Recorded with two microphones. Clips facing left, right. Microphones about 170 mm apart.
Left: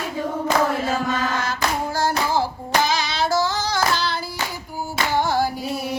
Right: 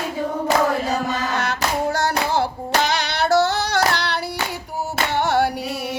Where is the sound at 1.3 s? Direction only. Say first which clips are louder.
Right 1 dB; 70° right (ahead or behind).